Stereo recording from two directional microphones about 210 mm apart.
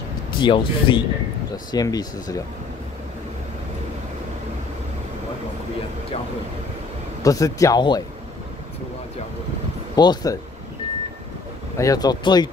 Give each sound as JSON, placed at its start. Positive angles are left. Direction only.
{"t": 0.4, "sound": "speech", "side_deg": 20}
{"t": 7.2, "sound": "speech", "side_deg": 15}
{"t": 9.9, "sound": "speech", "side_deg": 20}
{"t": 11.7, "sound": "speech", "side_deg": 15}